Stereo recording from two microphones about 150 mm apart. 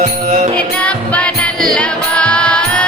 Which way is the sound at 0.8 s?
5° left (ahead or behind).